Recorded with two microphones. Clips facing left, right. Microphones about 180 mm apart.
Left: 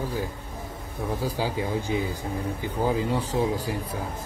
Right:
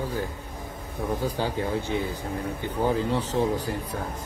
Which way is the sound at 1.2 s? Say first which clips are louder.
Left 1 dB; 10° left (ahead or behind).